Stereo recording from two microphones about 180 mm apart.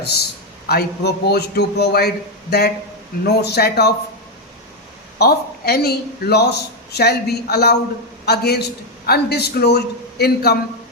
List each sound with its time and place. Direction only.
0.7 s a man's voice: 60° left (ahead or behind)
5.2 s a man's voice: 60° left (ahead or behind)